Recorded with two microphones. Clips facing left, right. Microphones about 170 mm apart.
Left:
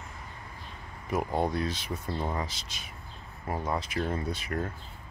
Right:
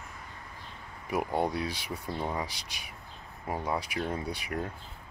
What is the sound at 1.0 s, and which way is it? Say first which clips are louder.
Speech: left 1 dB; 10° right (ahead or behind).